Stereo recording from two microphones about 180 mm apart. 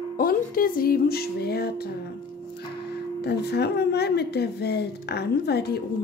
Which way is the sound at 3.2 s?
65° left (ahead or behind).